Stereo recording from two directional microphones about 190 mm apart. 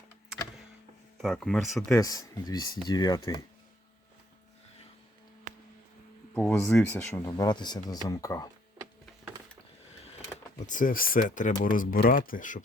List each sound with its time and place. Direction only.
1.2 s speech: centre (ahead or behind)
1.9 s speech: 20° left (ahead or behind)
6.3 s speech: 5° left (ahead or behind)
7.3 s speech: 20° left (ahead or behind)
10.7 s speech: 45° left (ahead or behind)